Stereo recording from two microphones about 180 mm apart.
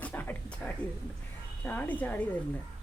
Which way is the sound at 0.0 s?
10° left (ahead or behind).